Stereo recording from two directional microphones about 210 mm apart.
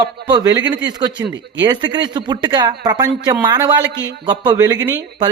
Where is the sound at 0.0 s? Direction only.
20° right (ahead or behind).